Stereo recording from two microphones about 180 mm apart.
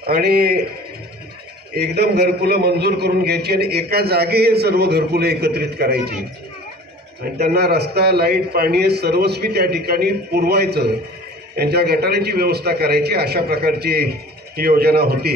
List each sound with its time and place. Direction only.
0.0 s a man's voice: 60° right (ahead or behind)
1.8 s a man's voice: 65° right (ahead or behind)
7.5 s a man's voice: 65° right (ahead or behind)